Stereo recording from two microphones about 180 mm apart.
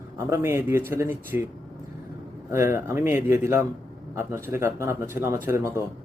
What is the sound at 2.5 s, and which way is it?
Speech, 15° right (ahead or behind).